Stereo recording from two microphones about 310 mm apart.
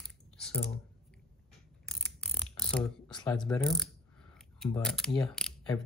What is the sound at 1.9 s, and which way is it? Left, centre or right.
Mechanisms, centre.